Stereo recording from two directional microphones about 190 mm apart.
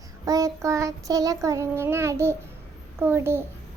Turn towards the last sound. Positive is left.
turn(degrees=-10)  # may be behind; listen again after turning